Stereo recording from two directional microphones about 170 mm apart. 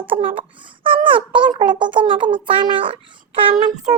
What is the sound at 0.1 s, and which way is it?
Speech, 30° right (ahead or behind).